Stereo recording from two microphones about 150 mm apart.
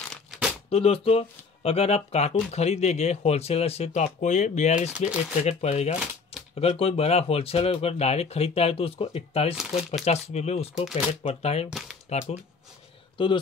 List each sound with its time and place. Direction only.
0.1 s a sound: centre (ahead or behind)
0.7 s speech: 40° left (ahead or behind)
4.9 s speech: 5° right (ahead or behind)
5.4 s speech: 45° left (ahead or behind)
13.2 s speech: 35° left (ahead or behind)